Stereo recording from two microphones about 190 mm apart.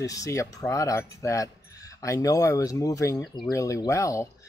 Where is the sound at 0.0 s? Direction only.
15° left (ahead or behind).